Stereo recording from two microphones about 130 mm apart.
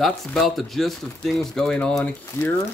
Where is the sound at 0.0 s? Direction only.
Centre (ahead or behind).